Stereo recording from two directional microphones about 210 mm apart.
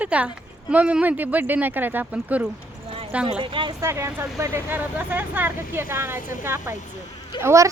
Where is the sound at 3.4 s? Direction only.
25° right (ahead or behind).